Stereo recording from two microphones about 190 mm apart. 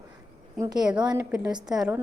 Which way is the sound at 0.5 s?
20° right (ahead or behind).